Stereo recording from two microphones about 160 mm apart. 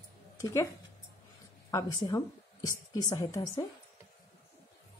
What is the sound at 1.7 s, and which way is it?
A woman's voice, 20° left (ahead or behind).